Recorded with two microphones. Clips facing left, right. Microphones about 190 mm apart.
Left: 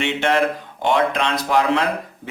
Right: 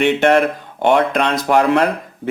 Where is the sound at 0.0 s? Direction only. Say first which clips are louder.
Right 6 dB; 50° right (ahead or behind).